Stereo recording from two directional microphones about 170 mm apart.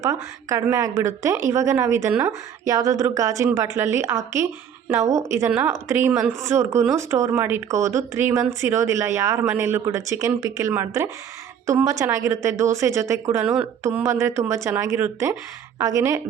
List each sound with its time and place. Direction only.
0.0 s a woman's voice: 20° right (ahead or behind)